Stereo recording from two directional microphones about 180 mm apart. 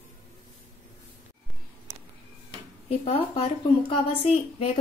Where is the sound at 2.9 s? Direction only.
35° left (ahead or behind).